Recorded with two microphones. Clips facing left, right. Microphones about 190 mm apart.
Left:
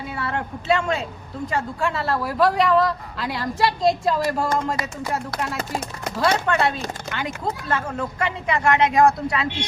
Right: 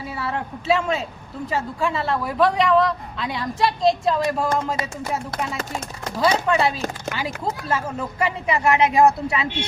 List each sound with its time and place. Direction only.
0.2 s a woman's voice: centre (ahead or behind)
6.1 s a woman's voice: 5° right (ahead or behind)